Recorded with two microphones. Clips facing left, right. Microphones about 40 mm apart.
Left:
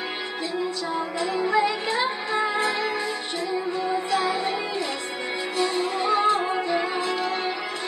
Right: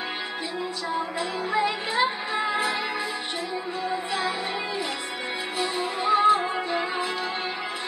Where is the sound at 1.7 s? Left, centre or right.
Right.